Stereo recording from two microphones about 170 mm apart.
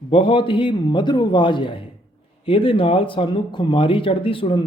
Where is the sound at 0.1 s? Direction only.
30° left (ahead or behind).